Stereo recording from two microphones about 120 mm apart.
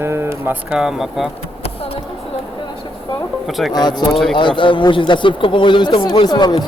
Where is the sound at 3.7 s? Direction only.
35° left (ahead or behind).